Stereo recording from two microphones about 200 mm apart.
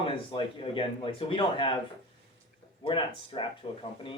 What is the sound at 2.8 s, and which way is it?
A man's voice, 25° left (ahead or behind).